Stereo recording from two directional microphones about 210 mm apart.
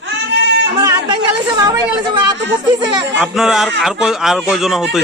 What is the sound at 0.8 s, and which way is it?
Speech, 20° right (ahead or behind).